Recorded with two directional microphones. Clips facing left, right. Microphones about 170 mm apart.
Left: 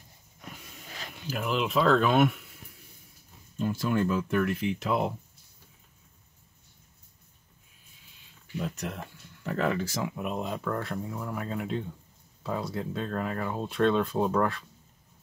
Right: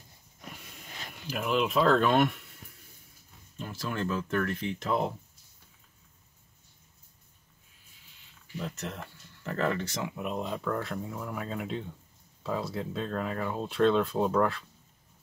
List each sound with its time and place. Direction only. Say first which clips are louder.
1.3 s speech: right 1 dB; centre (ahead or behind)
3.5 s speech: left 7 dB; 10° left (ahead or behind)
8.5 s speech: left 3 dB; 10° left (ahead or behind)